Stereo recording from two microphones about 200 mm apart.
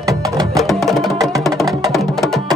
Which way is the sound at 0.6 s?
Centre (ahead or behind).